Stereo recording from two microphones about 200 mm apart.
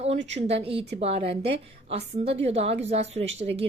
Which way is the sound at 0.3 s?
30° right (ahead or behind).